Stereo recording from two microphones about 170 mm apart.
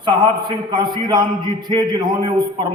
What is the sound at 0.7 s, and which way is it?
A man's voice, 25° right (ahead or behind).